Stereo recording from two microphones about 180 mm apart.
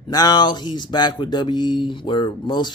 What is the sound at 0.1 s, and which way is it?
Speech, 25° left (ahead or behind).